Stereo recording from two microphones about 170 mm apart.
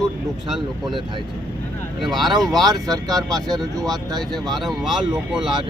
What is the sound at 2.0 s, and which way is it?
Speech, centre (ahead or behind).